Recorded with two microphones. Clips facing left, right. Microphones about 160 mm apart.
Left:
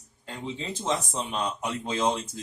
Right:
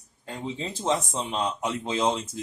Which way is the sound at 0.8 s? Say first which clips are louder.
Right 3 dB; 25° right (ahead or behind).